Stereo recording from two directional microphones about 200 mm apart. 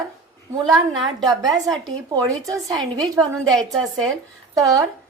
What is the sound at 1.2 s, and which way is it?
A woman's voice, 20° right (ahead or behind).